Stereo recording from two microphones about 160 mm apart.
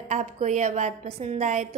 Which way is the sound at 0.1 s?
50° right (ahead or behind).